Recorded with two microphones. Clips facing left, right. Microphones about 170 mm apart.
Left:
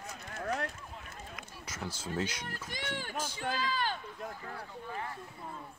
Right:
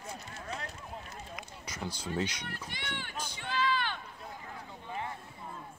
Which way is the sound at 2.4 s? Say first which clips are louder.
Left 2 dB; 40° left (ahead or behind).